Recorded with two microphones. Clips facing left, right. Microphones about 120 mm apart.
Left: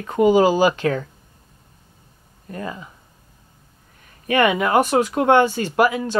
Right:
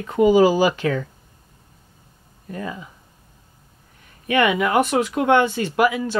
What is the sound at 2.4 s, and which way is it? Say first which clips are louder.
Speech: even; 35° left (ahead or behind).